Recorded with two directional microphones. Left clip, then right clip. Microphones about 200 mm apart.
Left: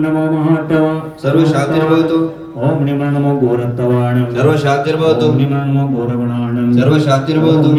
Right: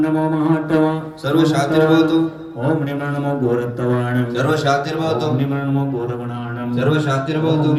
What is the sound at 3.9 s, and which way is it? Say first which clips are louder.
A man's voice: left 4 dB; 50° right (ahead or behind).